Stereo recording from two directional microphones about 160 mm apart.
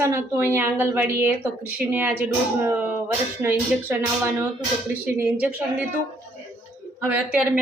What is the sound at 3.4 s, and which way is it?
Speech, 15° right (ahead or behind).